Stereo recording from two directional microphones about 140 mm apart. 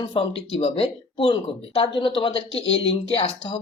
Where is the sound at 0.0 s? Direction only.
40° left (ahead or behind).